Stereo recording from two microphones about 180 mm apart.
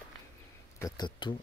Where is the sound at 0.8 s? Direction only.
20° left (ahead or behind).